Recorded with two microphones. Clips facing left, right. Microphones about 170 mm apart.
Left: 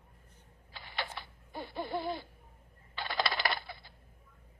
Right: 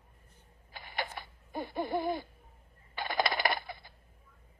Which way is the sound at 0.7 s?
50° right (ahead or behind).